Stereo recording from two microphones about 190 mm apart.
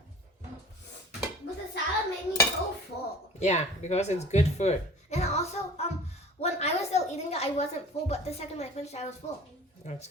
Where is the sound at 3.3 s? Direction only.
35° left (ahead or behind).